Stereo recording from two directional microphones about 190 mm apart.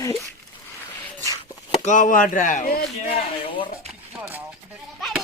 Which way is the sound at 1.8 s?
40° left (ahead or behind).